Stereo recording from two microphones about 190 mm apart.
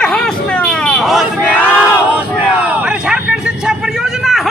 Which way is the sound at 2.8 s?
5° right (ahead or behind).